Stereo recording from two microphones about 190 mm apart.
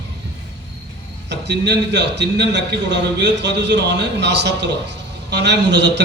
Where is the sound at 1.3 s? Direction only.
65° right (ahead or behind).